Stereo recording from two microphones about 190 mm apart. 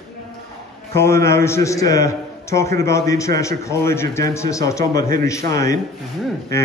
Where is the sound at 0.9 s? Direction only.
15° left (ahead or behind).